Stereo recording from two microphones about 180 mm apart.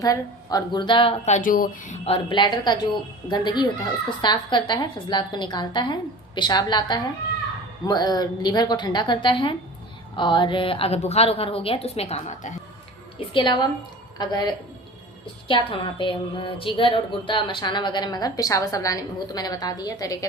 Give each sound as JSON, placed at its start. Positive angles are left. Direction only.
{"t": 0.0, "sound": "a woman's voice", "side_deg": 20}
{"t": 2.0, "sound": "a woman's voice", "side_deg": 30}
{"t": 13.1, "sound": "a woman's voice", "side_deg": 25}